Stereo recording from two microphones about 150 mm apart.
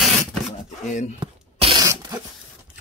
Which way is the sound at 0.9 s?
55° left (ahead or behind).